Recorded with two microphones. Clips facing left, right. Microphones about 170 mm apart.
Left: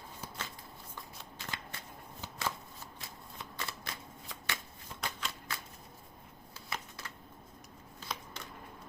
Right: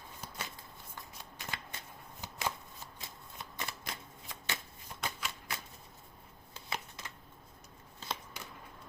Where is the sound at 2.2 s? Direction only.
15° right (ahead or behind).